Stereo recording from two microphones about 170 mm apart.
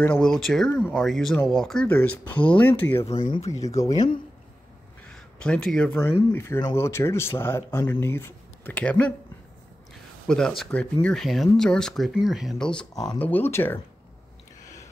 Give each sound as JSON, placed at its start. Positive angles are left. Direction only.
{"t": 0.0, "sound": "speech", "side_deg": 5}
{"t": 3.3, "sound": "speech", "side_deg": 35}
{"t": 3.6, "sound": "speech", "side_deg": 20}
{"t": 3.9, "sound": "speech", "side_deg": 35}
{"t": 5.0, "sound": "speech", "side_deg": 5}
{"t": 10.2, "sound": "speech", "side_deg": 5}